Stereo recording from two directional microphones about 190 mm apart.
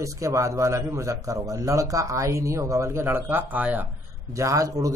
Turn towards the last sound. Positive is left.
turn(degrees=-15)  # may be behind; listen again after turning